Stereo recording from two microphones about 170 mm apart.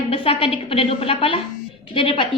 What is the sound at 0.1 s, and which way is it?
A woman's voice, 30° left (ahead or behind).